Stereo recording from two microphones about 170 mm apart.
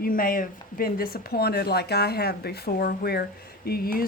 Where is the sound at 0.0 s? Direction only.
55° left (ahead or behind).